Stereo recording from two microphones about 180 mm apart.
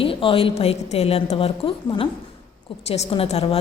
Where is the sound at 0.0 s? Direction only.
30° left (ahead or behind).